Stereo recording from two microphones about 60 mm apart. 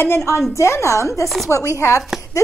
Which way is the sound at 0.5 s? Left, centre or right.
Left.